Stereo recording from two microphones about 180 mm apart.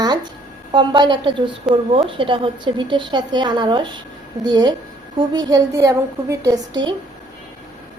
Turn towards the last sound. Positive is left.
turn(degrees=-20)  # may be behind; listen again after turning